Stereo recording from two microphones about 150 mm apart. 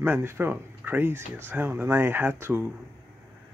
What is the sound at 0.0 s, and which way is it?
Speech, 15° right (ahead or behind).